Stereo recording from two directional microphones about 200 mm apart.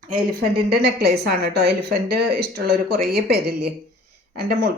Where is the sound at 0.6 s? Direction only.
55° right (ahead or behind).